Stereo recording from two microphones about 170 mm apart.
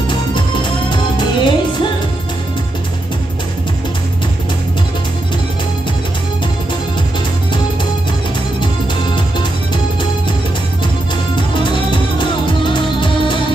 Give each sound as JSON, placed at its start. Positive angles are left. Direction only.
{"t": 0.1, "sound": "music", "side_deg": 25}
{"t": 11.3, "sound": "music", "side_deg": 30}